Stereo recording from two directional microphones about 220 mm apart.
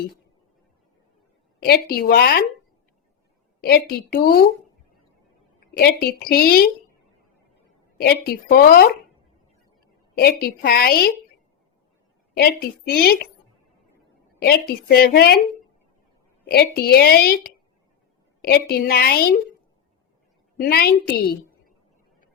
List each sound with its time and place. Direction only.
1.6 s a woman's voice: 45° left (ahead or behind)
3.6 s a woman's voice: 45° left (ahead or behind)
5.5 s a woman's voice: 45° left (ahead or behind)
7.9 s a woman's voice: 45° left (ahead or behind)
10.2 s a woman's voice: 45° left (ahead or behind)
12.4 s a woman's voice: 45° left (ahead or behind)
14.3 s a woman's voice: 45° left (ahead or behind)
16.5 s a woman's voice: 45° left (ahead or behind)
20.6 s a woman's voice: 45° left (ahead or behind)